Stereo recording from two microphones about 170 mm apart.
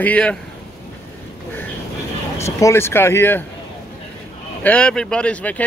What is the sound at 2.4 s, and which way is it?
Speech, 15° left (ahead or behind).